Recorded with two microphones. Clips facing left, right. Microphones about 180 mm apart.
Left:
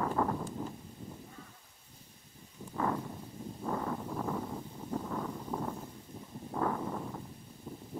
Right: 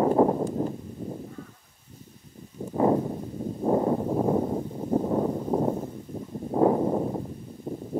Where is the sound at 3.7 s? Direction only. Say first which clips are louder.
Right 13 dB; 35° right (ahead or behind); by 5.1 s 50° right (ahead or behind).